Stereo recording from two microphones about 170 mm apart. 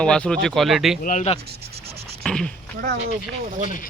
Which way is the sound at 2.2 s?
5° left (ahead or behind).